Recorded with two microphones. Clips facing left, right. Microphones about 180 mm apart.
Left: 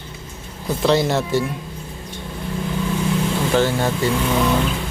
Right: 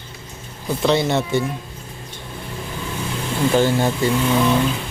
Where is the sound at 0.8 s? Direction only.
Centre (ahead or behind).